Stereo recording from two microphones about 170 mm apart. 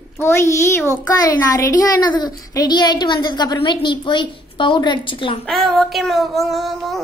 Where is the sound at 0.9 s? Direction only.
15° left (ahead or behind).